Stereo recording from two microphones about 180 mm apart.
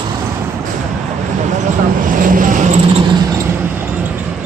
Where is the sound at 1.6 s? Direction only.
50° right (ahead or behind).